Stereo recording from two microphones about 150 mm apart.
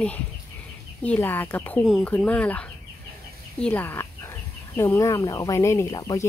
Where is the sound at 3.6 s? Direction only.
10° left (ahead or behind).